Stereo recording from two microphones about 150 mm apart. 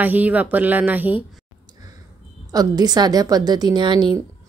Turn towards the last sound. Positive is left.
turn(degrees=-30)  # may be behind; listen again after turning